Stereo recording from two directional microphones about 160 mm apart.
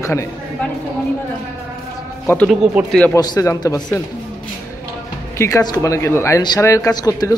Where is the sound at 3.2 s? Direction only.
20° left (ahead or behind).